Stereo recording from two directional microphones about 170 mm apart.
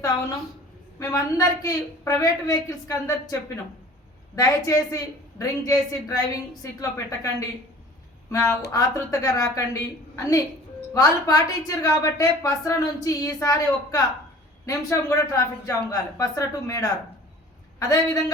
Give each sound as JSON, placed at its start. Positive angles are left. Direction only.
{"t": 0.9, "sound": "a woman's voice", "side_deg": 20}
{"t": 8.7, "sound": "a woman's voice", "side_deg": 20}